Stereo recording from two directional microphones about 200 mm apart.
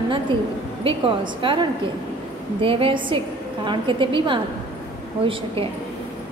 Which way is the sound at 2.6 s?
25° right (ahead or behind).